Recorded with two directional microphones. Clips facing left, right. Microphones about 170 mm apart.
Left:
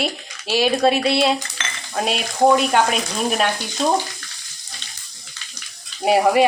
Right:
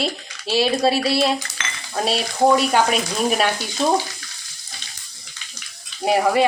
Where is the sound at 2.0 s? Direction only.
35° right (ahead or behind).